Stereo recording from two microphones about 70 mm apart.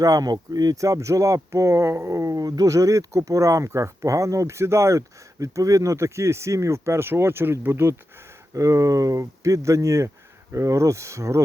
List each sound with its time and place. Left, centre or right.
0.0 s speech: right
8.5 s speech: right